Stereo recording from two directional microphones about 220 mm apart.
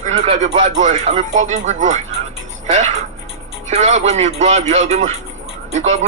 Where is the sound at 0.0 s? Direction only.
30° right (ahead or behind).